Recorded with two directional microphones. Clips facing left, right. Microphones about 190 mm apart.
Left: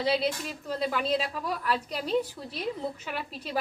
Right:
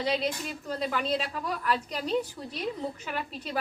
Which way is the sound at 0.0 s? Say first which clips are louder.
Left 2 dB; 5° left (ahead or behind).